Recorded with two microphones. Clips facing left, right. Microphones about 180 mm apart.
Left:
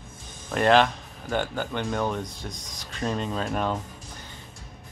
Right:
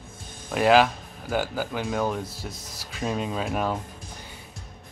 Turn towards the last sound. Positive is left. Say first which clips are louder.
# even
turn(degrees=-5)  # may be behind; listen again after turning